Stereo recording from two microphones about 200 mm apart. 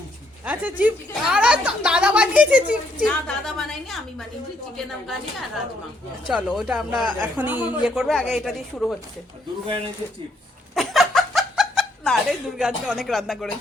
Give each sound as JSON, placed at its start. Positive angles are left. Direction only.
{"t": 0.4, "sound": "speech", "side_deg": -10}
{"t": 9.6, "sound": "speech", "side_deg": -25}
{"t": 10.8, "sound": "snicker", "side_deg": 0}